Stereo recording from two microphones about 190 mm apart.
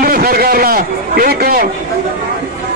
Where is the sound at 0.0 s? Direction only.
50° right (ahead or behind).